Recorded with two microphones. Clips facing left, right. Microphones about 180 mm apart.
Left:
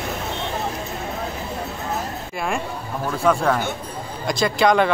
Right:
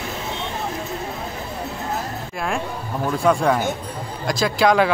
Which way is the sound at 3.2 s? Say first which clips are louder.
Right 1 dB; 10° right (ahead or behind).